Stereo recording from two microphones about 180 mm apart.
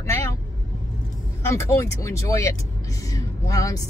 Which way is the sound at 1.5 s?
15° left (ahead or behind).